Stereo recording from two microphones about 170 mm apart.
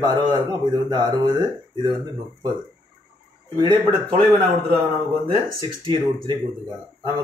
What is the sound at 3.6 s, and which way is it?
Speech, 25° right (ahead or behind).